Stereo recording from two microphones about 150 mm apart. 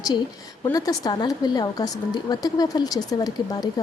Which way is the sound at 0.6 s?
25° left (ahead or behind).